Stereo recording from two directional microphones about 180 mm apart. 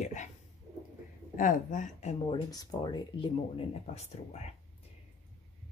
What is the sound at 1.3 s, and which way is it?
Speech, 50° left (ahead or behind).